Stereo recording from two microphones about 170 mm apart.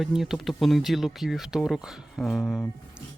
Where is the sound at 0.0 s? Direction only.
Centre (ahead or behind).